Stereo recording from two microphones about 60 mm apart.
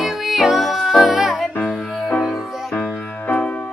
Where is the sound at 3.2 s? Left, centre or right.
Left.